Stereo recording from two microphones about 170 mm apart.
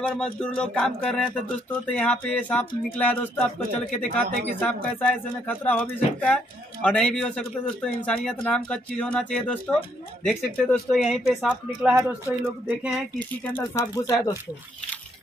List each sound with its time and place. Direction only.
0.0 s speech: 5° left (ahead or behind)
13.2 s speech: 10° left (ahead or behind)